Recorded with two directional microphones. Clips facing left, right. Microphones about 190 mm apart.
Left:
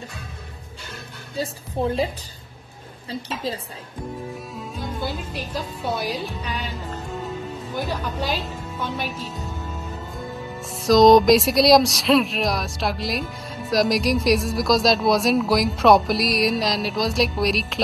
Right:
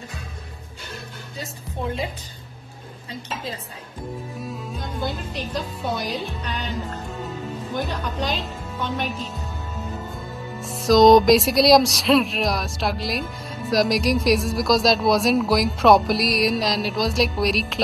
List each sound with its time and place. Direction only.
1.3 s a woman's voice: 35° left (ahead or behind)
3.1 s a woman's voice: 30° left (ahead or behind)
4.4 s music: centre (ahead or behind)
5.9 s a woman's voice: 5° left (ahead or behind)
10.1 s speech: centre (ahead or behind)